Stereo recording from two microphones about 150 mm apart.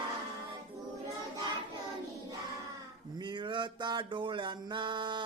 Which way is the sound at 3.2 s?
30° right (ahead or behind).